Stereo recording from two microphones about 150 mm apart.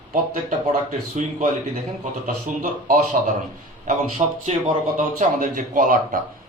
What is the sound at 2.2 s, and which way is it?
Speech, 70° right (ahead or behind).